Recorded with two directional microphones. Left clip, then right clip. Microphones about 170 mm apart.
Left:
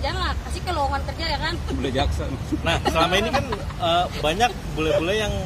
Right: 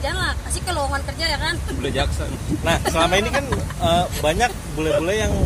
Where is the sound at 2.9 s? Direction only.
20° right (ahead or behind).